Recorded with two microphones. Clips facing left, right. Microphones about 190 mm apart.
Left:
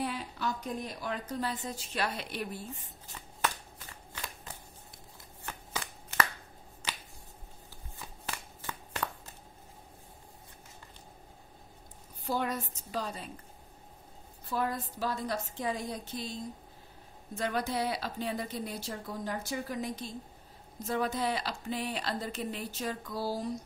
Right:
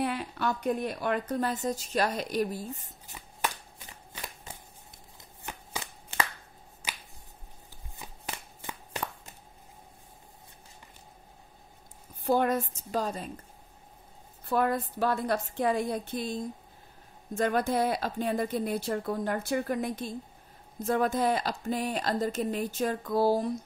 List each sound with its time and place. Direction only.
0.0 s a woman's voice: 60° right (ahead or behind); by 2.9 s 40° right (ahead or behind)
3.1 s shuffling cards: 10° right (ahead or behind)
5.4 s shuffling cards: 15° right (ahead or behind)
8.0 s shuffling cards: 20° right (ahead or behind)
12.3 s a woman's voice: 50° right (ahead or behind)
14.4 s a woman's voice: 60° right (ahead or behind)